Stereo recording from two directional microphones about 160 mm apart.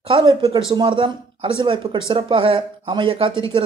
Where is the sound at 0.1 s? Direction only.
35° right (ahead or behind).